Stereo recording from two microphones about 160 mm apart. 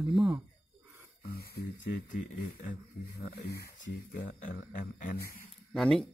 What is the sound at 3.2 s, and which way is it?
Speech, 85° left.